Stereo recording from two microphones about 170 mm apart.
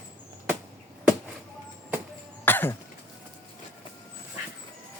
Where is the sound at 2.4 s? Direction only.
10° left (ahead or behind).